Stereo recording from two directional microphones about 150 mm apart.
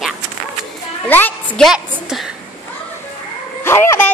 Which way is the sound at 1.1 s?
10° left (ahead or behind).